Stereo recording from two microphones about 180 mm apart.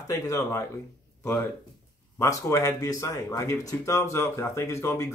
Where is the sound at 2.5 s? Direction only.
20° left (ahead or behind).